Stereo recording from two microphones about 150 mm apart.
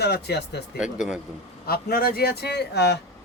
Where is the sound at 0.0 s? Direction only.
90° left.